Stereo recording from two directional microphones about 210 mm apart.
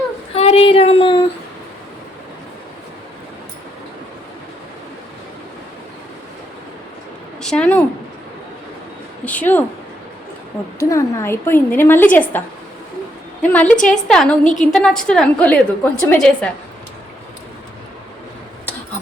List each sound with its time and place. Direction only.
0.3 s child singing: 30° left (ahead or behind)
7.4 s speech: 5° left (ahead or behind)
9.2 s a sound: 5° left (ahead or behind)
10.8 s a woman's voice: 15° left (ahead or behind)
13.4 s a woman's voice: 5° left (ahead or behind)